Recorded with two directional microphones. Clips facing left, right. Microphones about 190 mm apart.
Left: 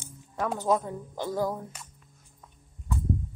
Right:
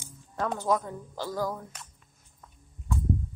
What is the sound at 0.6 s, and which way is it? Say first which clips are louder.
A woman's voice: left 3 dB; 20° left (ahead or behind).